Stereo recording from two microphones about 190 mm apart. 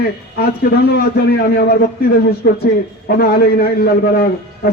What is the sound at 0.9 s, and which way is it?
A man's voice, 55° left (ahead or behind).